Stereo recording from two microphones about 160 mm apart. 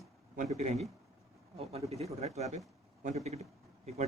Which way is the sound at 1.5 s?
40° right (ahead or behind).